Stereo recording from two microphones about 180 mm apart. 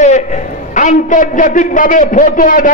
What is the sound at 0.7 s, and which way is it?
A man's voice, 45° left (ahead or behind).